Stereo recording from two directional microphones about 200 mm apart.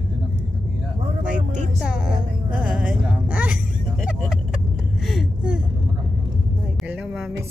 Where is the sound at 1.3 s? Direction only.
35° right (ahead or behind).